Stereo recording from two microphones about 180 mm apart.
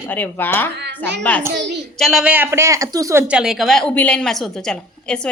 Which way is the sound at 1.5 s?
75° right (ahead or behind).